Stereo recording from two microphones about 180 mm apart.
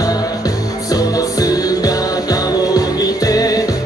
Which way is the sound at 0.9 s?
20° left (ahead or behind).